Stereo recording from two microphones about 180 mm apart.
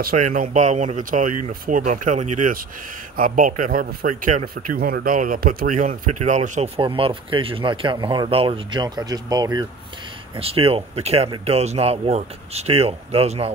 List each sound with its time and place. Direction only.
0.0 s speech: 50° right (ahead or behind)
4.6 s speech: 55° right (ahead or behind)
6.8 s speech: 30° right (ahead or behind)